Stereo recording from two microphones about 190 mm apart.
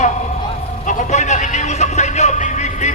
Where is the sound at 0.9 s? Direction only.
40° left (ahead or behind).